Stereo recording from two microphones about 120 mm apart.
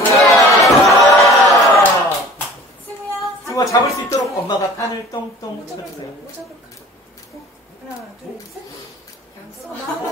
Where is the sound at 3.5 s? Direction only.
25° left (ahead or behind).